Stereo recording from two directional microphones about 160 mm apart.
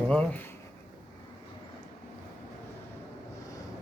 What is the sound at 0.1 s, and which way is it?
Speech, 10° left (ahead or behind).